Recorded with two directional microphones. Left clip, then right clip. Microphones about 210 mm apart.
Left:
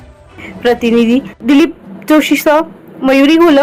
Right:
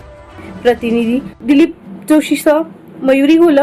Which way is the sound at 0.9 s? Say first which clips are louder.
Left 5 dB; 5° left (ahead or behind).